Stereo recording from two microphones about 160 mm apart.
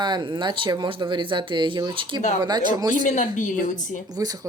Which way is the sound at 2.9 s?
55° left (ahead or behind).